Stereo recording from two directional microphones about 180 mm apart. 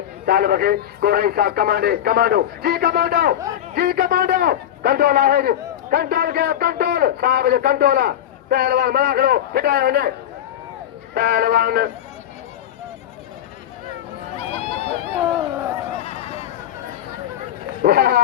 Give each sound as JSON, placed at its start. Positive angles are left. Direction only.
{"t": 0.3, "sound": "a man's voice", "side_deg": -55}
{"t": 11.1, "sound": "a man's voice", "side_deg": -55}
{"t": 14.6, "sound": "run", "side_deg": 35}
{"t": 17.8, "sound": "a man's voice", "side_deg": -60}